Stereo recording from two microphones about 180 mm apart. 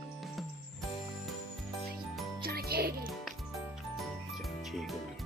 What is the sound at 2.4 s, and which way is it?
Music, 60° right (ahead or behind).